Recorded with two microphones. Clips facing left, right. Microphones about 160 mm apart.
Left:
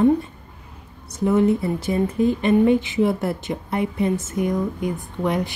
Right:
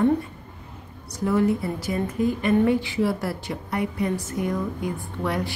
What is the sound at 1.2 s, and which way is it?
A woman's voice, 20° left (ahead or behind).